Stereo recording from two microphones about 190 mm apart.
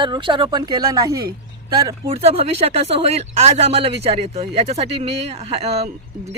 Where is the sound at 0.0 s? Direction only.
25° right (ahead or behind).